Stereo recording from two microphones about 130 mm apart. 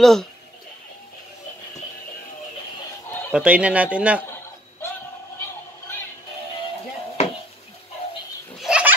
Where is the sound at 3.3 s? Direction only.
10° right (ahead or behind).